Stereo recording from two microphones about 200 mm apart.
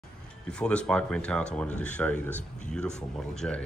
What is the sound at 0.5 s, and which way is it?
Speech, 5° left (ahead or behind).